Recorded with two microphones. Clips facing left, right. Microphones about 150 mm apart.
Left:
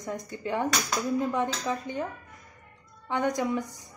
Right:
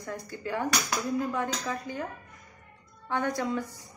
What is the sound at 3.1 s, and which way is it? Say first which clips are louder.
Speech: left 2 dB; 15° left (ahead or behind).